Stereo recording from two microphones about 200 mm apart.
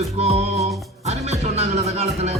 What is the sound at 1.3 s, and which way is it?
Music, 35° right (ahead or behind).